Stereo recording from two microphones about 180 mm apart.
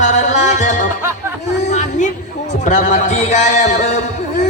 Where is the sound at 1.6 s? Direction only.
40° left (ahead or behind).